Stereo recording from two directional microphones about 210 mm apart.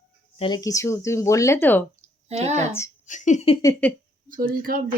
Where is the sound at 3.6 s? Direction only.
10° left (ahead or behind).